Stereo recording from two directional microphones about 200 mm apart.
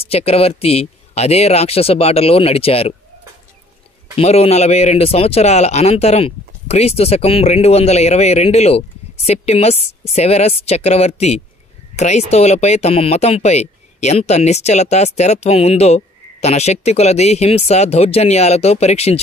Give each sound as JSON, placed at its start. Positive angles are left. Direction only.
{"t": 0.0, "sound": "speech", "side_deg": 30}
{"t": 4.1, "sound": "speech", "side_deg": 30}